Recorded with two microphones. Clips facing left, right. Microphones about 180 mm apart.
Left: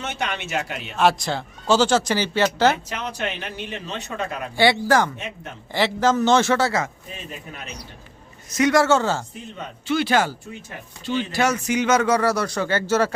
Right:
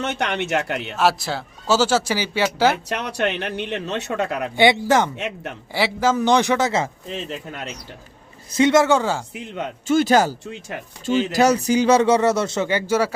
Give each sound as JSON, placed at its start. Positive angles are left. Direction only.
{"t": 0.0, "sound": "speech", "side_deg": -65}
{"t": 0.9, "sound": "speech", "side_deg": -5}
{"t": 2.9, "sound": "speech", "side_deg": -65}
{"t": 4.5, "sound": "speech", "side_deg": -20}
{"t": 5.1, "sound": "speech", "side_deg": -70}
{"t": 5.7, "sound": "speech", "side_deg": -10}
{"t": 7.1, "sound": "speech", "side_deg": -85}
{"t": 8.5, "sound": "speech", "side_deg": -25}
{"t": 9.8, "sound": "speech", "side_deg": -45}